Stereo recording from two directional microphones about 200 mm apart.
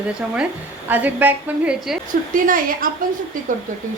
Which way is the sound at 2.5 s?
45° right (ahead or behind).